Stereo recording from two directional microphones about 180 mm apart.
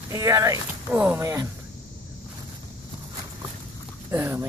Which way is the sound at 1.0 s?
15° right (ahead or behind).